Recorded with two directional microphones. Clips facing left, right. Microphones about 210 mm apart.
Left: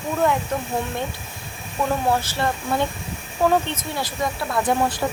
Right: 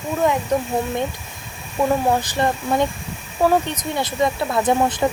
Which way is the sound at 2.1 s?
15° right (ahead or behind).